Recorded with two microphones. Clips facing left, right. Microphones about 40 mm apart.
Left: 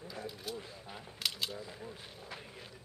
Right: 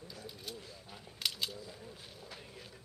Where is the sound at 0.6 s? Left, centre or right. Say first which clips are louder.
Left 4 dB; left.